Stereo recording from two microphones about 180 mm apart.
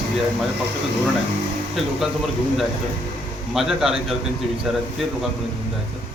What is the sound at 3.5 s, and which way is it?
Speech, centre (ahead or behind).